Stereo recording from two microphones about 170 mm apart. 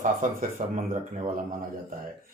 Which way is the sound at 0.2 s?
50° right (ahead or behind).